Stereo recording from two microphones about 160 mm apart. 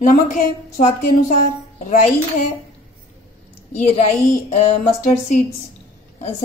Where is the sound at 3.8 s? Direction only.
45° left (ahead or behind).